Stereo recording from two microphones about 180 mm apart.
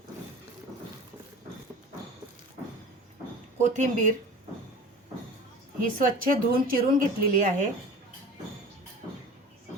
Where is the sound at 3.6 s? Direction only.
45° right (ahead or behind).